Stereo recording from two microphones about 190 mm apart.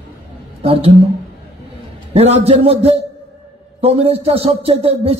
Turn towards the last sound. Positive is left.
turn(degrees=-30)  # may be behind; listen again after turning